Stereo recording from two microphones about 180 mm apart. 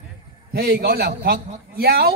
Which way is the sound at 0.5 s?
60° right (ahead or behind).